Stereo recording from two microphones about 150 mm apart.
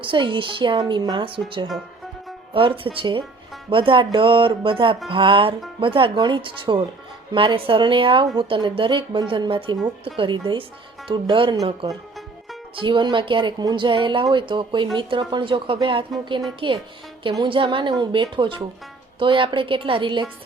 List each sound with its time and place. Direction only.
0.0 s speech: 35° right (ahead or behind)
11.9 s music: centre (ahead or behind)
12.7 s speech: 30° right (ahead or behind)